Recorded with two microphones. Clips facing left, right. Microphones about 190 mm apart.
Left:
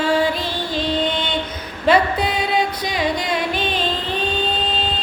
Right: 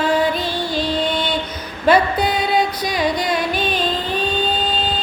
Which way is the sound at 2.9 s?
25° left (ahead or behind).